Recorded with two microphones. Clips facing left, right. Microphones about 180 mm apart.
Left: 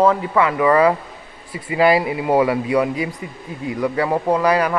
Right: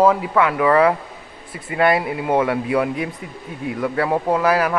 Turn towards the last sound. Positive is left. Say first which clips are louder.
# left 1 dB
turn(degrees=-5)  # may be behind; listen again after turning